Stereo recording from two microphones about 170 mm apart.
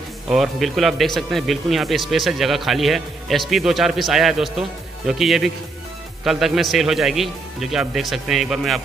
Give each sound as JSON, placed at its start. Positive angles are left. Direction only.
{"t": 0.3, "sound": "speech", "side_deg": 0}